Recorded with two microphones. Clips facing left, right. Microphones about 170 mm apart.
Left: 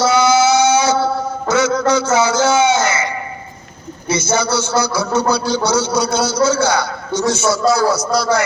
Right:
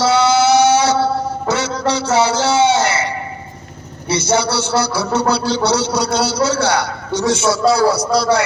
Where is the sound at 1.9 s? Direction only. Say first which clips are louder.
Left 1 dB; 35° right (ahead or behind).